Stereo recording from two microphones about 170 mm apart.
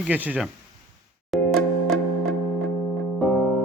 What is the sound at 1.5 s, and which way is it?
Music, centre (ahead or behind).